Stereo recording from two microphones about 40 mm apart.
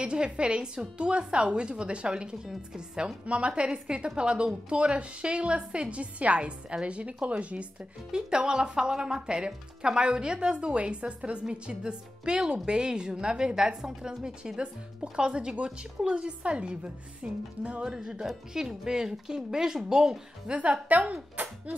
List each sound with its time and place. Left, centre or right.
0.0 s speech: right
2.4 s a woman's voice: centre
3.3 s a woman's voice: right
8.1 s speech: right
17.8 s a woman's voice: centre
20.9 s a woman's voice: right